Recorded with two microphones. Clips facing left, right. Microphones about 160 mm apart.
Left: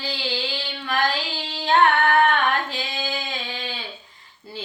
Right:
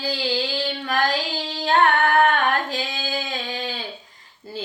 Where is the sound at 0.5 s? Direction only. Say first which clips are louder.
Right 2 dB; 40° right (ahead or behind).